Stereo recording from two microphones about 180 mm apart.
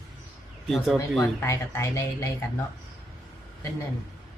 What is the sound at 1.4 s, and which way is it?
Speech, 15° left (ahead or behind).